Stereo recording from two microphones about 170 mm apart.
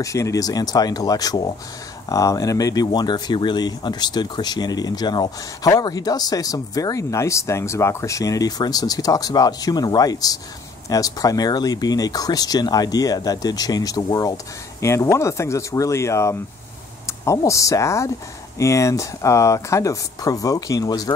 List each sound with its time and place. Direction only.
0.0 s speech: 20° left (ahead or behind)